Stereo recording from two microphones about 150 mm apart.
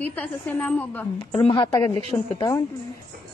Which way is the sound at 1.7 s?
20° left (ahead or behind).